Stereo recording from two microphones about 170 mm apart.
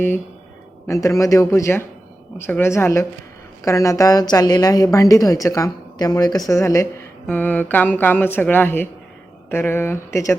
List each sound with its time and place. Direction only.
0.9 s a woman's voice: 20° left (ahead or behind)